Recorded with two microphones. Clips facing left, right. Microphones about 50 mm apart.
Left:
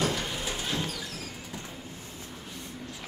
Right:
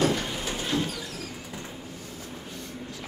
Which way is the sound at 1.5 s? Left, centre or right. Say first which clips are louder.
Right 2 dB; right.